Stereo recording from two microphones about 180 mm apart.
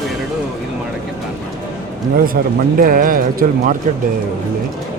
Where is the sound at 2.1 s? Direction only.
55° right (ahead or behind).